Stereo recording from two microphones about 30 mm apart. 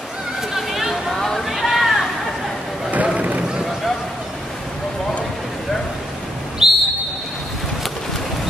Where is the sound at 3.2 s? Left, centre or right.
Right.